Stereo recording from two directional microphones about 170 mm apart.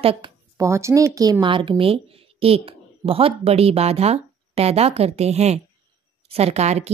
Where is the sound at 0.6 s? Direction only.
15° right (ahead or behind).